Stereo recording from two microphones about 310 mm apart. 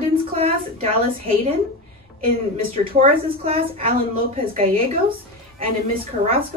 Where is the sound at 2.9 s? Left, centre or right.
Centre.